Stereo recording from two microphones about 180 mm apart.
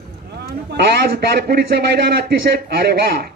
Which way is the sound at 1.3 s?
65° right (ahead or behind).